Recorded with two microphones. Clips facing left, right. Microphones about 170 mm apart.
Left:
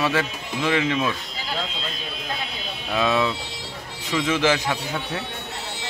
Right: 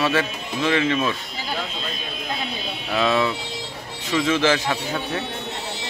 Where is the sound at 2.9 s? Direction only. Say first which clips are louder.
Right 1 dB; 15° left (ahead or behind).